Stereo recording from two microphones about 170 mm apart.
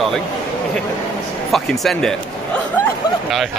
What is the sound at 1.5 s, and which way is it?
Speech, centre (ahead or behind).